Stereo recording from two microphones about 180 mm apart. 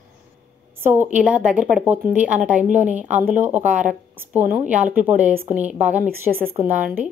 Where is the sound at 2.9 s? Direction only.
10° right (ahead or behind).